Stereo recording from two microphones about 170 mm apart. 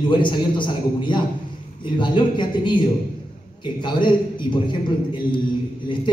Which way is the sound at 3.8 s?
25° left (ahead or behind).